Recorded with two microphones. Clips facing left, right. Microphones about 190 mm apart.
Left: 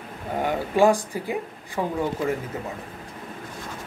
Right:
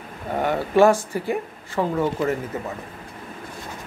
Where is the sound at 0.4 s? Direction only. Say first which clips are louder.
Right 3 dB; 15° left (ahead or behind).